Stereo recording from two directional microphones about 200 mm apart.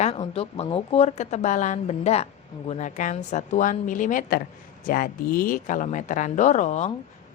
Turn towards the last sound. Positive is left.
turn(degrees=35)  # may be behind; listen again after turning